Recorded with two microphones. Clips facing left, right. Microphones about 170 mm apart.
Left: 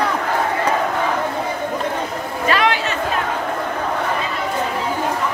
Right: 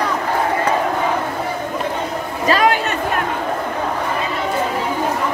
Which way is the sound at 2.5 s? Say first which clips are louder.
Right 3 dB; 40° right (ahead or behind).